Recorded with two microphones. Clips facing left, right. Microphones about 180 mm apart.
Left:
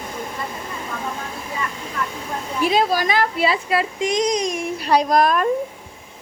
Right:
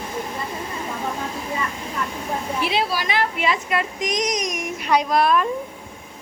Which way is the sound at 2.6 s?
45° left (ahead or behind).